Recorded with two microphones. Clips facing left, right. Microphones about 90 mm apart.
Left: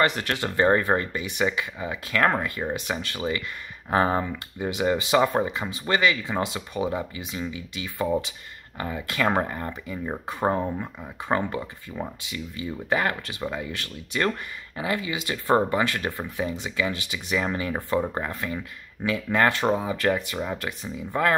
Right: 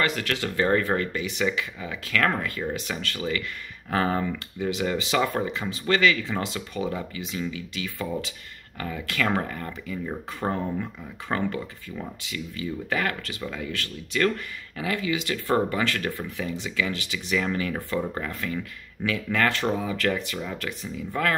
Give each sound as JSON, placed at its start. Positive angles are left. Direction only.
{"t": 0.1, "sound": "speech", "side_deg": 25}